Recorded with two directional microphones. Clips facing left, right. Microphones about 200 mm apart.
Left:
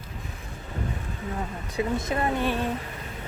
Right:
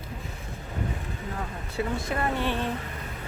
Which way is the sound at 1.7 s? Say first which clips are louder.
Left 3 dB; 20° left (ahead or behind).